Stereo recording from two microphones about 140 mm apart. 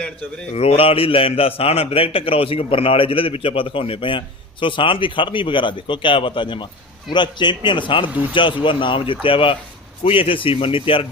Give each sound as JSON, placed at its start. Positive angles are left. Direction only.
{"t": 0.5, "sound": "a man's voice", "side_deg": 45}